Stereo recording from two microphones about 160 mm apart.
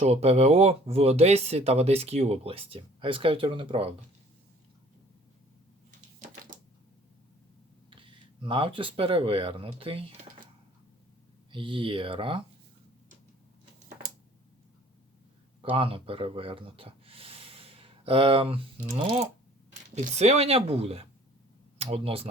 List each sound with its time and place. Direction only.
0.0 s speech: 40° right (ahead or behind)
7.9 s speech: 30° right (ahead or behind)
11.5 s speech: 30° right (ahead or behind)
15.7 s speech: 35° right (ahead or behind)